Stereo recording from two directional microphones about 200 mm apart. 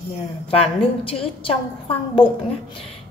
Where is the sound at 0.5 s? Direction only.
30° left (ahead or behind).